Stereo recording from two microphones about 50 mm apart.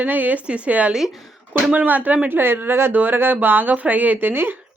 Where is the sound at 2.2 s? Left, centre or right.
Right.